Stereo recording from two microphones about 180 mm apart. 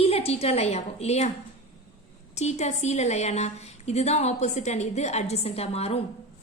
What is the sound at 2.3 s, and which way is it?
A woman's voice, 40° left (ahead or behind).